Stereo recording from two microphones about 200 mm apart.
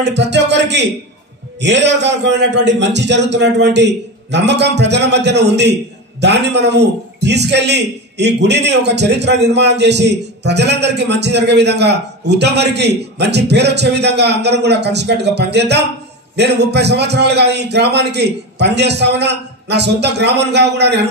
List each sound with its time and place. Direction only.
0.0 s a man's voice: 60° right (ahead or behind)